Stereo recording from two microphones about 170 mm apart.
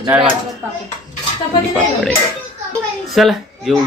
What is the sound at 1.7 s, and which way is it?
Speech, 5° left (ahead or behind).